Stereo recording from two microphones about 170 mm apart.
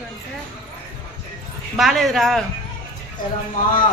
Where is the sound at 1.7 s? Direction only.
Centre (ahead or behind).